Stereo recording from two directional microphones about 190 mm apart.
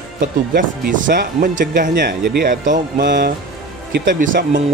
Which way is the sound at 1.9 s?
60° right (ahead or behind).